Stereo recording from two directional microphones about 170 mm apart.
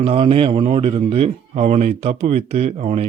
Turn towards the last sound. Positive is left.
turn(degrees=-40)  # may be behind; listen again after turning